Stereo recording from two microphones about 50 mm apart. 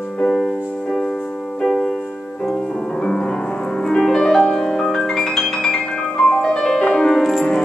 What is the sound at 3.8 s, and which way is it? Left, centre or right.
Music, centre.